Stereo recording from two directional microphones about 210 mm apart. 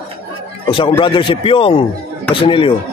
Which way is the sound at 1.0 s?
25° left (ahead or behind).